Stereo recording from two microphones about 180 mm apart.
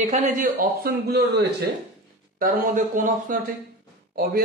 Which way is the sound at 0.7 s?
60° right (ahead or behind).